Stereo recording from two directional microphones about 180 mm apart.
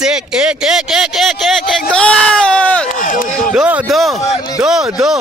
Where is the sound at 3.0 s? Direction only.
50° left (ahead or behind).